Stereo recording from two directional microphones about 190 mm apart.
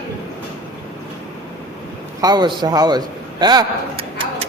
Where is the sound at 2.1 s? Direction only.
20° right (ahead or behind).